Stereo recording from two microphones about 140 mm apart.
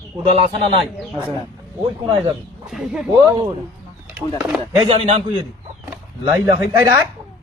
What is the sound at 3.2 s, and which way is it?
Speech, 30° right (ahead or behind).